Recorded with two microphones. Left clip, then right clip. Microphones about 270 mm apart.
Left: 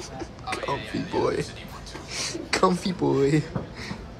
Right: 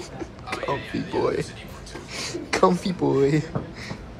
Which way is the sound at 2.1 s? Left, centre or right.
Centre.